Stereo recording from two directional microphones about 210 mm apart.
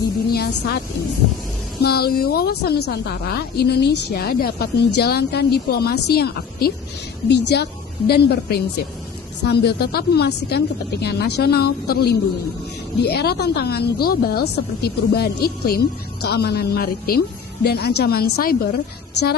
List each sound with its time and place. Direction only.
0.3 s vehicle: 50° left (ahead or behind)
1.8 s a woman's voice: 50° left (ahead or behind)